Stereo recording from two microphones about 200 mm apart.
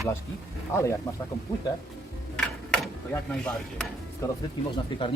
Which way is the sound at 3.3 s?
5° left (ahead or behind).